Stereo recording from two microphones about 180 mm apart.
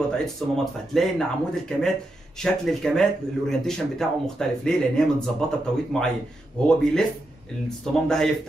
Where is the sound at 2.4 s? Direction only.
5° left (ahead or behind).